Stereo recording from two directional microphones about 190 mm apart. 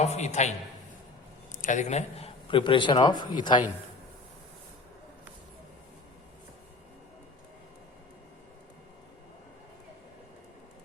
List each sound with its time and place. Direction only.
0.0 s a man's voice: 35° left (ahead or behind)
1.5 s a man's voice: 40° left (ahead or behind); by 3.6 s 25° left (ahead or behind)